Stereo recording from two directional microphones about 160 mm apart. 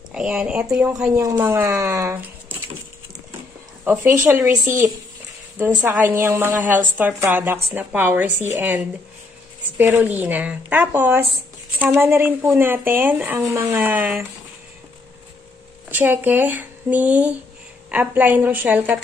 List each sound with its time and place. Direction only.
0.1 s speech: 5° right (ahead or behind)
3.8 s a woman's voice: 10° right (ahead or behind)
15.9 s a woman's voice: 10° right (ahead or behind)